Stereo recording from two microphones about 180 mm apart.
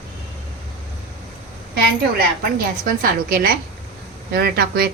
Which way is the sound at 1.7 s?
60° right (ahead or behind).